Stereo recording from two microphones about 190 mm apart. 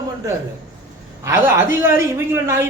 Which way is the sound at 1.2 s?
15° right (ahead or behind).